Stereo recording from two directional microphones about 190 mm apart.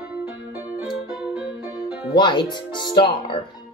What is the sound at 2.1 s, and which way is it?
Music, 25° left (ahead or behind).